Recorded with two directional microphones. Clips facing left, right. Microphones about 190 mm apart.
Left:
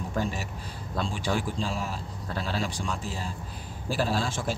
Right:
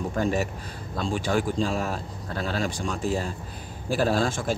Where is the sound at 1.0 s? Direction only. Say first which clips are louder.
Right 6 dB; 50° right (ahead or behind).